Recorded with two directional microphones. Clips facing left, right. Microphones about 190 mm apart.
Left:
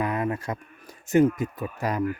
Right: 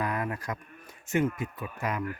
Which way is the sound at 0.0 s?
25° left (ahead or behind).